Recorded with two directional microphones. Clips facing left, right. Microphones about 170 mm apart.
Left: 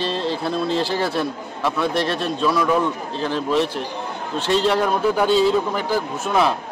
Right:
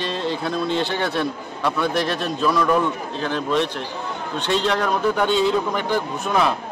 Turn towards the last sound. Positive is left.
turn(degrees=5)  # may be behind; listen again after turning